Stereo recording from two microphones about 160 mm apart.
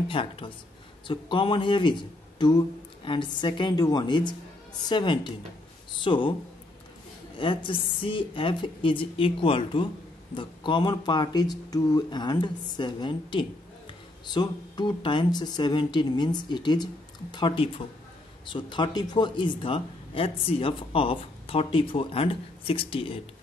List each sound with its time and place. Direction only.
0.1 s a man's voice: 35° left (ahead or behind)
7.3 s a man's voice: 30° left (ahead or behind)